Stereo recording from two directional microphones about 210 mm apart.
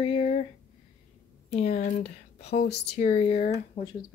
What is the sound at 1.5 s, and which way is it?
Speech, 35° left (ahead or behind).